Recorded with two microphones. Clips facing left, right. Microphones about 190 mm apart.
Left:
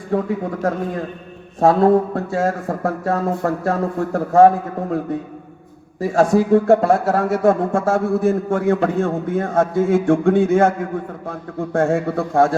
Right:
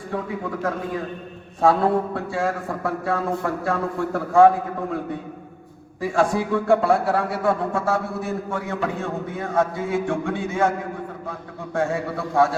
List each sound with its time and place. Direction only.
1.6 s a man's voice: 45° left (ahead or behind)
6.0 s a man's voice: 40° left (ahead or behind)